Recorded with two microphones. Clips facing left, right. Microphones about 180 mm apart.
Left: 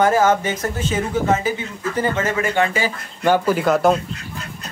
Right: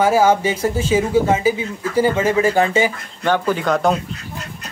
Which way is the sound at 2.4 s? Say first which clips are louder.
Right 3 dB; 30° right (ahead or behind).